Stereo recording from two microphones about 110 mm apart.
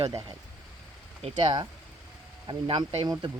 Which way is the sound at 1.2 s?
45° right (ahead or behind).